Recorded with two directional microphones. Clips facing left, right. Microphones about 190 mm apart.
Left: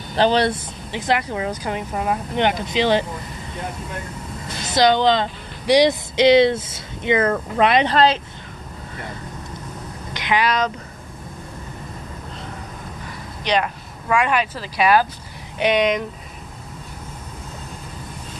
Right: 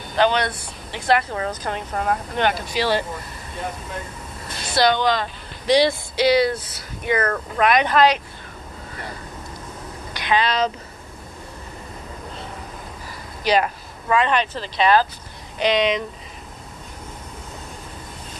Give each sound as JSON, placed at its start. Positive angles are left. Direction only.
{"t": 0.1, "sound": "speech", "side_deg": 35}
{"t": 0.9, "sound": "speech", "side_deg": 15}
{"t": 4.7, "sound": "speech", "side_deg": 20}
{"t": 10.1, "sound": "a sound", "side_deg": 20}
{"t": 10.4, "sound": "speech", "side_deg": -30}
{"t": 13.4, "sound": "speech", "side_deg": -5}
{"t": 14.0, "sound": "speech", "side_deg": 10}